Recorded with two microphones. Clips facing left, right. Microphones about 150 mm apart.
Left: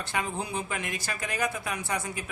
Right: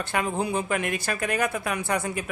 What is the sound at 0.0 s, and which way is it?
A woman's voice, 60° right (ahead or behind).